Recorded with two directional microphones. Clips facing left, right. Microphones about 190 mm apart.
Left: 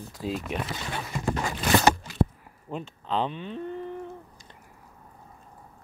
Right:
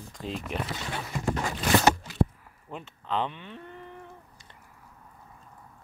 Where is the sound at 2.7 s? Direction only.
20° left (ahead or behind).